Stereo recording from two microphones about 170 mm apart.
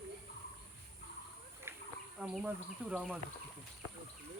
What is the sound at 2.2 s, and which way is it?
Speech, 5° right (ahead or behind).